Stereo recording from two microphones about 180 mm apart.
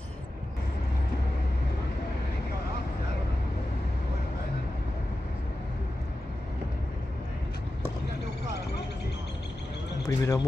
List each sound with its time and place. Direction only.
10.0 s speech: 20° left (ahead or behind)